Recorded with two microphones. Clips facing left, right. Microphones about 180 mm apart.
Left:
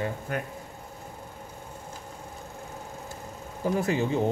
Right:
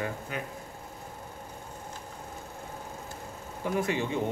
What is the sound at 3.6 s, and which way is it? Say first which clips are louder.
Speech: left 3 dB; 35° left (ahead or behind).